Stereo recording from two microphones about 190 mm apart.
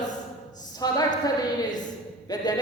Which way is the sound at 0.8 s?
20° left (ahead or behind).